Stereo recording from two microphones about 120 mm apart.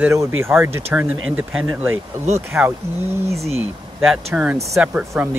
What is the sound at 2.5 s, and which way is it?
Speech, 20° right (ahead or behind).